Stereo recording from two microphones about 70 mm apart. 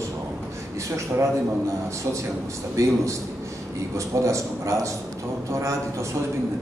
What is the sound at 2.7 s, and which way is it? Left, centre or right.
A man's voice, right.